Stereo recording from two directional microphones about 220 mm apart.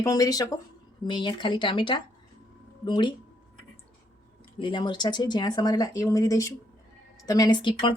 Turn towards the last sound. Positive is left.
turn(degrees=20)  # may be behind; listen again after turning